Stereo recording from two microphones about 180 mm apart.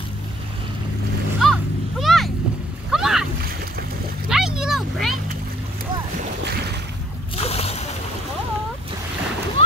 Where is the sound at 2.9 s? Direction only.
5° right (ahead or behind).